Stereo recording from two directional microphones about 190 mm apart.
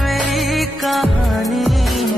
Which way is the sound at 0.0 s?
Centre (ahead or behind).